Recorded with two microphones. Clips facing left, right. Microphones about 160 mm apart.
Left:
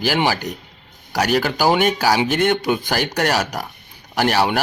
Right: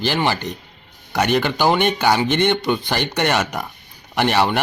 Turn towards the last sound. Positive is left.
turn(degrees=5)  # may be behind; listen again after turning